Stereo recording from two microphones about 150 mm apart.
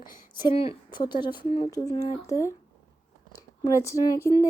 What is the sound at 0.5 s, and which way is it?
A woman's voice, 40° left (ahead or behind).